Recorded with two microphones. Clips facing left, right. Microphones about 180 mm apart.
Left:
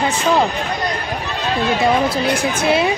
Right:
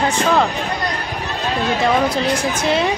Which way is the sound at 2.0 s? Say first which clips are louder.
Even; 10° left (ahead or behind).